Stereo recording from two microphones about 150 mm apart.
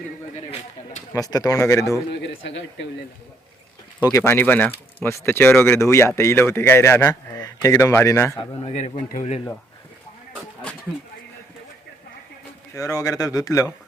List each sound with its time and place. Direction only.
1.1 s speech: 25° left (ahead or behind)
4.0 s speech: 20° left (ahead or behind)
8.4 s a man's voice: 40° left (ahead or behind)
9.0 s speech: 55° left (ahead or behind)
12.7 s speech: 20° left (ahead or behind)